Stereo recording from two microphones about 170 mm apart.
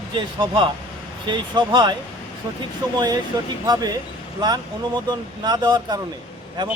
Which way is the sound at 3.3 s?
20° right (ahead or behind).